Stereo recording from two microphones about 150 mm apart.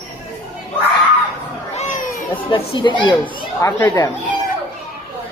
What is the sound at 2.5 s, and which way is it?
Speech, 35° left (ahead or behind).